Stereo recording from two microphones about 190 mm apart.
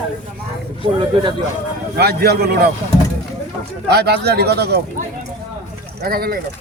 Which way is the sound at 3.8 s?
60° right (ahead or behind).